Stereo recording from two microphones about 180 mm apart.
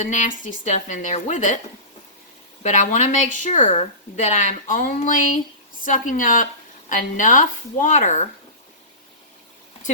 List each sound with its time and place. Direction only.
0.1 s a woman's voice: 45° left (ahead or behind)
2.6 s a woman's voice: 40° left (ahead or behind)